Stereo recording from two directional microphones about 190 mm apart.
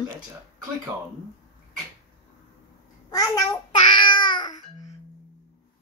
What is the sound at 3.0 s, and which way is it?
Babbling, 20° left (ahead or behind).